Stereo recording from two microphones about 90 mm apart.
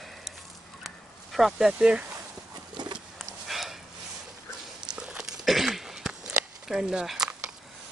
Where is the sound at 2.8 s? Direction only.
55° right (ahead or behind).